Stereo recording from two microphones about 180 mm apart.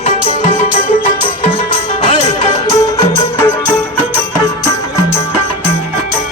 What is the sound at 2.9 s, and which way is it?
Music, 10° left (ahead or behind).